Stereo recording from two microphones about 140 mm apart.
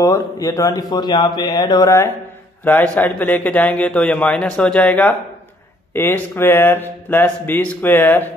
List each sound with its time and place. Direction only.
0.0 s a man's voice: 20° left (ahead or behind)